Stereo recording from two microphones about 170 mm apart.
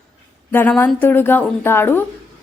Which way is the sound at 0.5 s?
10° left (ahead or behind).